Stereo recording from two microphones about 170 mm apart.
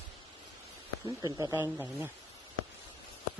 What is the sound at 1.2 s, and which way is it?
Speech, 20° right (ahead or behind).